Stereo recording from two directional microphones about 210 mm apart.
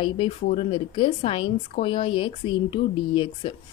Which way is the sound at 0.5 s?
30° left (ahead or behind).